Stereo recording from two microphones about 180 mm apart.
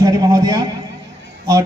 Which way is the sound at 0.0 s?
20° right (ahead or behind).